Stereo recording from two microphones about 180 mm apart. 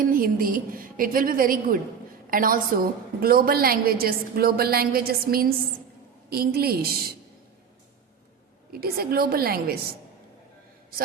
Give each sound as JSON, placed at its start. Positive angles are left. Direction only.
{"t": 0.0, "sound": "a woman's voice", "side_deg": -55}
{"t": 8.7, "sound": "a woman's voice", "side_deg": -60}